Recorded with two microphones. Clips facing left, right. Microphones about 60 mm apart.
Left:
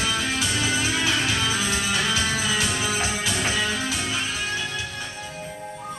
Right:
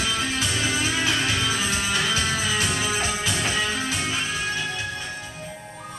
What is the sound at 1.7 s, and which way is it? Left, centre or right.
Music, right.